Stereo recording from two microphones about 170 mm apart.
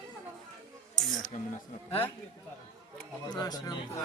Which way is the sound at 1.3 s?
45° left (ahead or behind).